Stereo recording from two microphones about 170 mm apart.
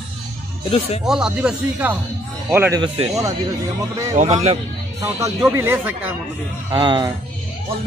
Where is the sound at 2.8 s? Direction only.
25° right (ahead or behind).